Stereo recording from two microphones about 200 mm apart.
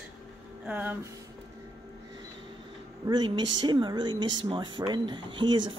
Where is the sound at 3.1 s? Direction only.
25° right (ahead or behind).